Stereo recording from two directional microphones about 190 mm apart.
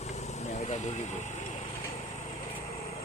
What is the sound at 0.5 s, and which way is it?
Vehicle, 35° left (ahead or behind).